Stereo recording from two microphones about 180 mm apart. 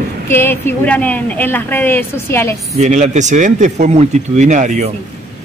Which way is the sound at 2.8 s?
40° right (ahead or behind).